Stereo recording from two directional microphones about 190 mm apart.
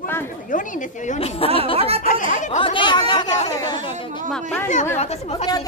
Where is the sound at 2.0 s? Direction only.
40° left (ahead or behind).